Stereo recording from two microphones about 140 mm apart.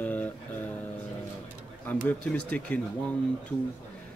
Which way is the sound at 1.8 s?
10° left (ahead or behind).